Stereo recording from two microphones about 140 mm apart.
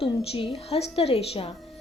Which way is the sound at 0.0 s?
45° left (ahead or behind).